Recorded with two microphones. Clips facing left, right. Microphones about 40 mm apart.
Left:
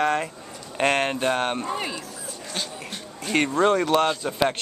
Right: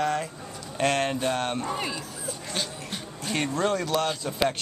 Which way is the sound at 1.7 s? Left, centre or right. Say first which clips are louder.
Left 2 dB; centre.